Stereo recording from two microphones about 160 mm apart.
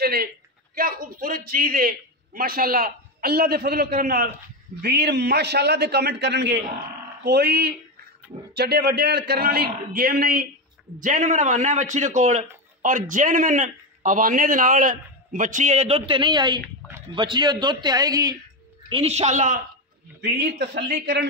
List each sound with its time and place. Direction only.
0.0 s a man's voice: 70° right (ahead or behind)
4.8 s a man's voice: 90° right; by 10.4 s 70° right (ahead or behind)
11.0 s a man's voice: 50° right (ahead or behind); by 18.4 s 25° right (ahead or behind)
18.9 s a man's voice: 35° right (ahead or behind)
20.2 s a man's voice: 90° right